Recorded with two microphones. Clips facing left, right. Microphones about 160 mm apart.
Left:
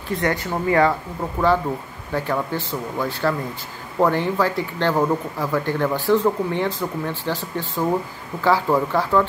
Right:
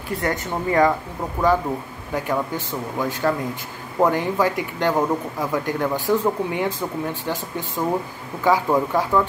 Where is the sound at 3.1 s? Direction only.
15° right (ahead or behind).